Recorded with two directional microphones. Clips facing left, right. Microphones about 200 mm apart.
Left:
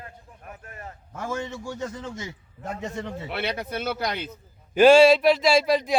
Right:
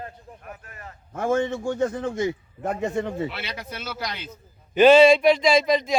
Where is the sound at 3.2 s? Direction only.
55° left (ahead or behind).